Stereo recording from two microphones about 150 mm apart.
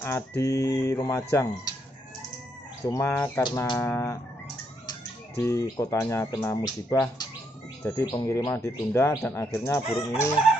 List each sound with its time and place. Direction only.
0.0 s speech: 15° left (ahead or behind)
2.9 s speech: 15° left (ahead or behind)
5.4 s speech: 20° left (ahead or behind)